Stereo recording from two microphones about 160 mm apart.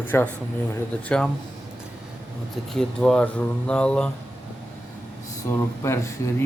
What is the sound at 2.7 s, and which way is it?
Speech, 5° left (ahead or behind).